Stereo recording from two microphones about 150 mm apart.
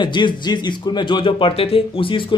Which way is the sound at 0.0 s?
30° left (ahead or behind).